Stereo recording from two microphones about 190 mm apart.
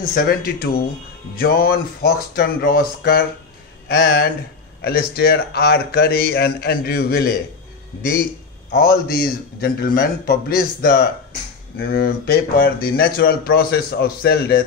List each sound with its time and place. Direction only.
0.1 s a man's voice: 50° left (ahead or behind)
8.7 s speech: 50° left (ahead or behind)